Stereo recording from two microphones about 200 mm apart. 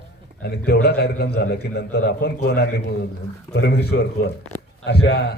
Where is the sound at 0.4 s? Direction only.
55° left (ahead or behind).